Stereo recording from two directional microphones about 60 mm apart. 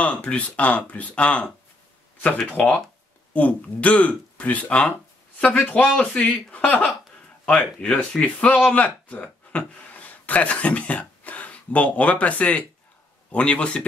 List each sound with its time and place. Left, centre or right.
0.0 s speech: left